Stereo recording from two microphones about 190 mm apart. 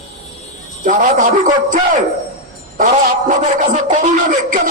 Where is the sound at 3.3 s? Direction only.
40° right (ahead or behind).